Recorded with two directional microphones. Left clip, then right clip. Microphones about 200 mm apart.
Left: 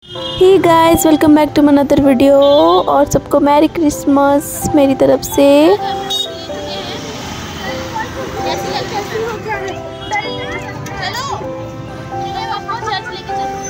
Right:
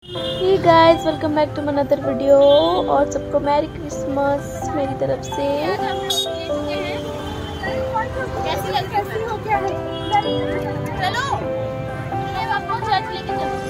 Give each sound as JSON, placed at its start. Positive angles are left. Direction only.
{"t": 0.5, "sound": "speech", "side_deg": 55}
{"t": 11.0, "sound": "children playing", "side_deg": -10}